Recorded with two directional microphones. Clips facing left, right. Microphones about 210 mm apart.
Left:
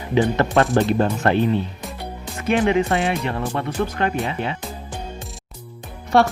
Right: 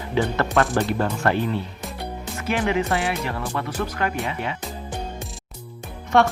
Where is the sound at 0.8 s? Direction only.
20° left (ahead or behind).